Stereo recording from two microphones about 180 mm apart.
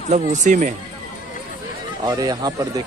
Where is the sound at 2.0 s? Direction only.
20° right (ahead or behind).